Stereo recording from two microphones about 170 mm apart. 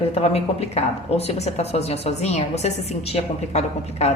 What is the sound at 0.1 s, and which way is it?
A woman's voice, 35° left (ahead or behind).